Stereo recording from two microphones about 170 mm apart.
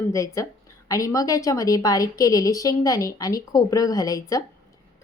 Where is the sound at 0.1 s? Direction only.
20° left (ahead or behind).